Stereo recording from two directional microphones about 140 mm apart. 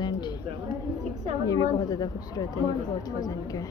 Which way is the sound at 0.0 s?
30° left (ahead or behind).